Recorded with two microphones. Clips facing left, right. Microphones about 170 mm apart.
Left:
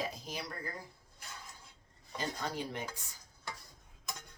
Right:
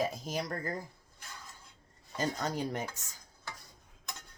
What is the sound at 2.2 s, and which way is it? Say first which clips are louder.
Speech: right 5 dB; 45° right (ahead or behind).